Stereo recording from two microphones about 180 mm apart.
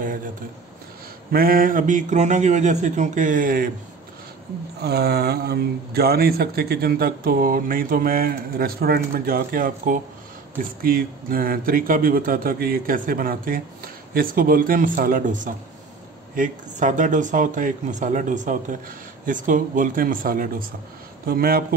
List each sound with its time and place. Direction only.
1.3 s a man's voice: 55° right (ahead or behind)
4.8 s a man's voice: 60° right (ahead or behind)